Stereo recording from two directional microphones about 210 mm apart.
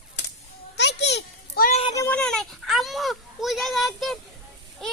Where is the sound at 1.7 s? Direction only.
30° left (ahead or behind).